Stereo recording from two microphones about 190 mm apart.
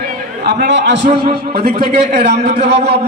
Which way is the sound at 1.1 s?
30° right (ahead or behind).